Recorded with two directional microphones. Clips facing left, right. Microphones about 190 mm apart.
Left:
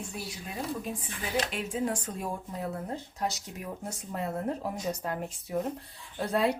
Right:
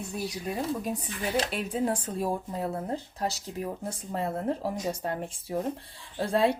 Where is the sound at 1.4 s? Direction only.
35° right (ahead or behind).